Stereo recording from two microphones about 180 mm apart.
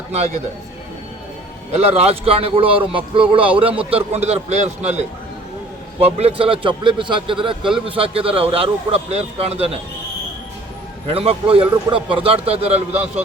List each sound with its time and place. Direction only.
1.7 s a man's voice: 35° right (ahead or behind)
11.1 s a man's voice: 30° right (ahead or behind)